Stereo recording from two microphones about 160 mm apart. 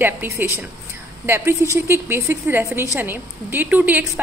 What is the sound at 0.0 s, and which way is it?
A woman's voice, 10° right (ahead or behind).